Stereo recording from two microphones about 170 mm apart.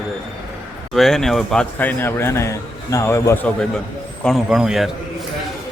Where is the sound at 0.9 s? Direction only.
Centre (ahead or behind).